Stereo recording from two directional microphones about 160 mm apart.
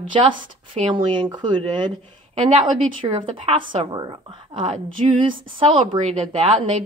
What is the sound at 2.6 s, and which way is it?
Speech, 30° right (ahead or behind).